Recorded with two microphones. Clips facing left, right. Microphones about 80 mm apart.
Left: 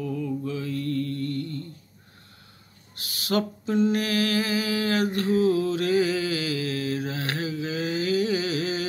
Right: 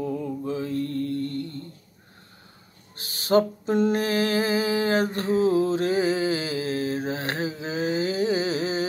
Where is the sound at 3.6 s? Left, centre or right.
Right.